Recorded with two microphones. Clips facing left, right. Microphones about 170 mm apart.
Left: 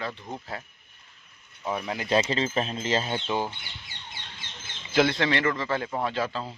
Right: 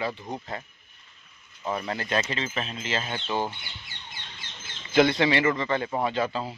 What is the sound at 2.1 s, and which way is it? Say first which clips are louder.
Speech: left 6 dB; 25° left (ahead or behind).